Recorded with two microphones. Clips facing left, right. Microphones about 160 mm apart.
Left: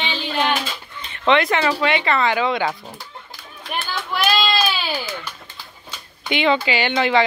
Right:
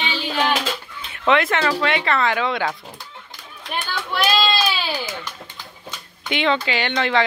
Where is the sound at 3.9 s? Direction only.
Centre (ahead or behind).